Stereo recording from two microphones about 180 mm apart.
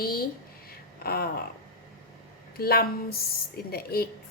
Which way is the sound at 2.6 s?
60° left (ahead or behind).